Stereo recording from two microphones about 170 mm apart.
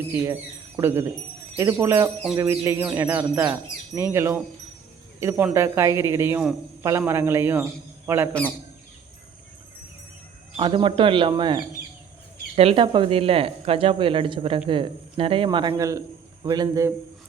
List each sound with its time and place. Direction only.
0.1 s speech: 15° right (ahead or behind)
8.3 s speech: 10° left (ahead or behind)
10.6 s a man's voice: 30° right (ahead or behind)